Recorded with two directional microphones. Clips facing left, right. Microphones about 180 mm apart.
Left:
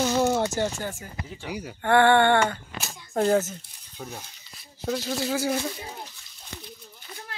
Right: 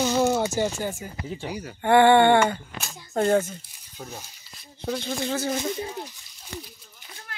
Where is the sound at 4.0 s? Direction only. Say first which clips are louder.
Left 1 dB; 10° right (ahead or behind).